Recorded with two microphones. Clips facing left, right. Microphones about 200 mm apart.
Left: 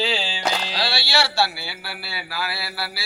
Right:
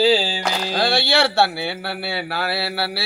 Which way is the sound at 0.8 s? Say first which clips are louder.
Right 6 dB; 55° right (ahead or behind).